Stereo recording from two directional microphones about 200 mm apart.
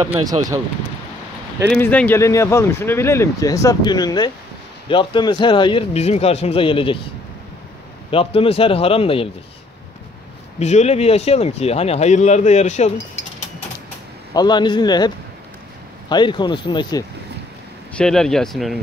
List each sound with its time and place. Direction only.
0.0 s speech: 20° right (ahead or behind)
1.7 s a man's voice: 5° left (ahead or behind); by 7.0 s 25° left (ahead or behind)
8.1 s a man's voice: 25° left (ahead or behind)
10.6 s speech: 35° left (ahead or behind)
14.3 s a man's voice: 20° left (ahead or behind)
17.9 s speech: 5° left (ahead or behind)